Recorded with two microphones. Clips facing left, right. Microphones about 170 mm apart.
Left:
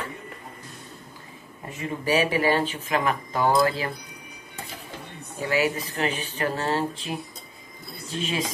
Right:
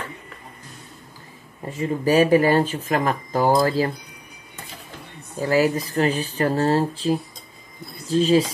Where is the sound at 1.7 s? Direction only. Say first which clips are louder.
Right 5 dB; 35° right (ahead or behind).